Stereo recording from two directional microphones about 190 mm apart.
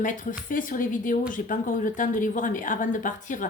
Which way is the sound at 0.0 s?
45° left (ahead or behind).